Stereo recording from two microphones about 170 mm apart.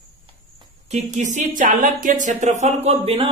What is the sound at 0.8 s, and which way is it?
Speech, 45° right (ahead or behind).